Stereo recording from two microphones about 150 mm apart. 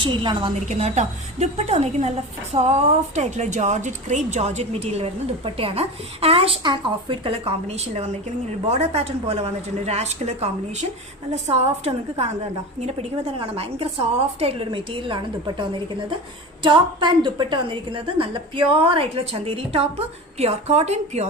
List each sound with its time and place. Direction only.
0.0 s a woman's voice: 30° right (ahead or behind)
0.7 s a woman's voice: 45° right (ahead or behind)